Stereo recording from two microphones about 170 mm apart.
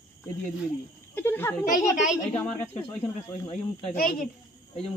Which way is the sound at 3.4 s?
30° left (ahead or behind).